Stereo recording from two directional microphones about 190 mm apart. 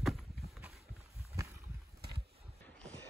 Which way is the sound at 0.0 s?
Centre (ahead or behind).